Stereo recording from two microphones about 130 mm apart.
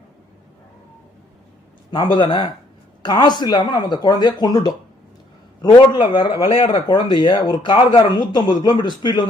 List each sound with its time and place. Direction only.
1.9 s speech: 35° left (ahead or behind)
5.7 s speech: 35° left (ahead or behind)